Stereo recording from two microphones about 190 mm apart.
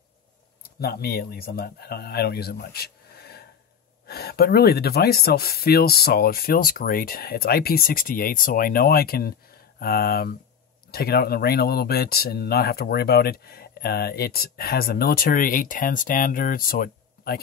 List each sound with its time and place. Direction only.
0.7 s speech: 55° left (ahead or behind)